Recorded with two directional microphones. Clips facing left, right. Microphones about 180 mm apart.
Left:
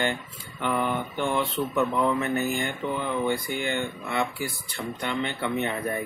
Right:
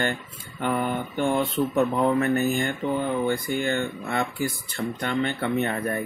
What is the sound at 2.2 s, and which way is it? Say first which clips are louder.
Speech: right 4 dB; 45° right (ahead or behind).